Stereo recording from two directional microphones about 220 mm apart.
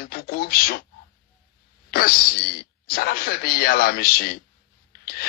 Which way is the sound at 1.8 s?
45° left (ahead or behind).